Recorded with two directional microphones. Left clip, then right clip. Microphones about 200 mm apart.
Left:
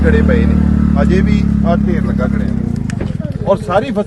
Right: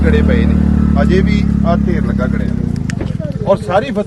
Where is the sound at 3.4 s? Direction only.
20° right (ahead or behind).